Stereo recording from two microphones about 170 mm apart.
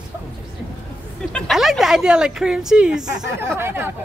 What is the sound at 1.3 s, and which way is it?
A woman's voice, centre (ahead or behind).